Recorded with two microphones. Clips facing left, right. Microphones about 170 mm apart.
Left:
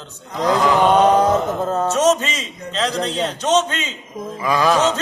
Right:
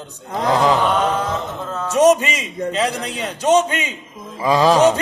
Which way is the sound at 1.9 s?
10° right (ahead or behind).